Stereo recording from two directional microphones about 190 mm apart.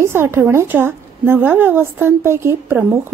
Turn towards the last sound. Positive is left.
turn(degrees=-15)  # may be behind; listen again after turning